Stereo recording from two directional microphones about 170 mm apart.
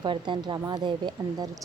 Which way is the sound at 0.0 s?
25° right (ahead or behind).